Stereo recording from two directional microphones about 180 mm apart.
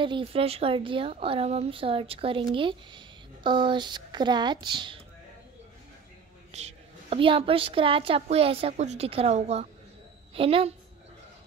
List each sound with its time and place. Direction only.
0.0 s a woman's voice: 30° right (ahead or behind)
6.5 s a woman's voice: 35° right (ahead or behind)